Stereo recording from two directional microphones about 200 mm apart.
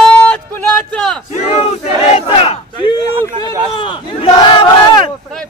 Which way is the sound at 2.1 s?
30° left (ahead or behind).